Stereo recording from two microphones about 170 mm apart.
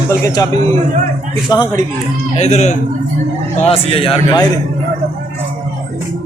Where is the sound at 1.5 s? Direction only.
20° left (ahead or behind).